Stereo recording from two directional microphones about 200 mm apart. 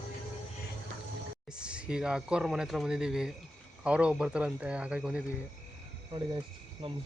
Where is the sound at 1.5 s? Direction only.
5° right (ahead or behind).